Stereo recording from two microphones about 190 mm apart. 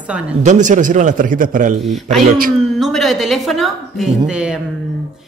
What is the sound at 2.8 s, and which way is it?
Speech, centre (ahead or behind).